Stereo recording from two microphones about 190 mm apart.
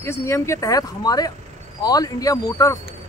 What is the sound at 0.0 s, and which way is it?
A man's voice, 15° left (ahead or behind).